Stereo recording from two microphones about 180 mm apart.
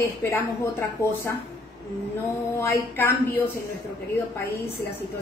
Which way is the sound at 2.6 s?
10° left (ahead or behind).